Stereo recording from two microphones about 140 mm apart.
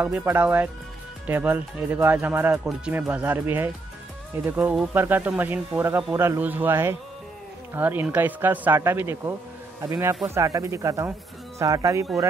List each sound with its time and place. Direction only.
0.2 s speech: 15° right (ahead or behind)